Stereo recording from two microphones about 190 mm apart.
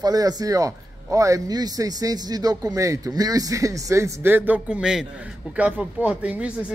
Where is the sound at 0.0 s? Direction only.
20° right (ahead or behind).